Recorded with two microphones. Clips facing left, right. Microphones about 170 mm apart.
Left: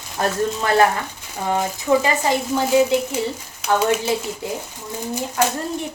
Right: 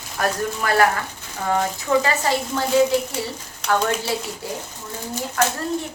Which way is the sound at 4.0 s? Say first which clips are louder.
Left 3 dB; 20° left (ahead or behind).